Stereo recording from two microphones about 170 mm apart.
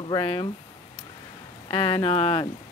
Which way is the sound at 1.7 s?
30° left (ahead or behind).